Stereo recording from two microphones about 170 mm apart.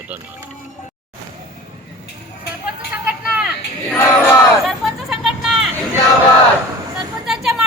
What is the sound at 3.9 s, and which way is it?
Battle cry, 10° left (ahead or behind).